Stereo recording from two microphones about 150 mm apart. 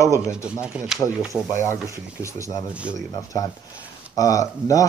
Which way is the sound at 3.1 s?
25° left (ahead or behind).